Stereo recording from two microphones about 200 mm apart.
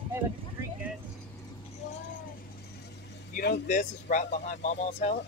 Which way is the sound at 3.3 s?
45° left (ahead or behind).